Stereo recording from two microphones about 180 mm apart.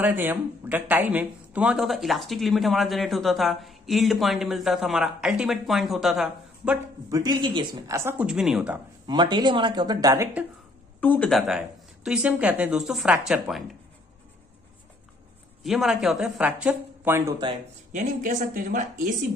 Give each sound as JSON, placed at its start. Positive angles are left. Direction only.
{"t": 0.0, "sound": "speech", "side_deg": -10}
{"t": 7.1, "sound": "speech", "side_deg": -20}
{"t": 9.0, "sound": "speech", "side_deg": -25}
{"t": 11.0, "sound": "speech", "side_deg": 10}
{"t": 15.6, "sound": "speech", "side_deg": 0}
{"t": 17.9, "sound": "speech", "side_deg": -45}